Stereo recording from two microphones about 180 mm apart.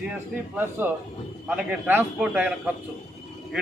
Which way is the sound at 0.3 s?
15° right (ahead or behind).